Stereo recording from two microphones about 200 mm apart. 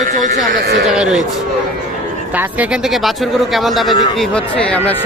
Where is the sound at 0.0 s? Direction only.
40° right (ahead or behind).